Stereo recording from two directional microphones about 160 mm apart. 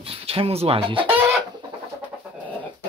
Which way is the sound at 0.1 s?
35° right (ahead or behind).